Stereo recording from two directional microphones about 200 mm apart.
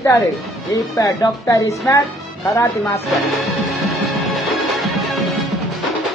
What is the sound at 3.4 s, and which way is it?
Music, centre (ahead or behind).